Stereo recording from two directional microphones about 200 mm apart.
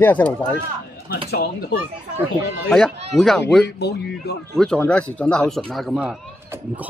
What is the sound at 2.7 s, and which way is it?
Speech, 5° left (ahead or behind).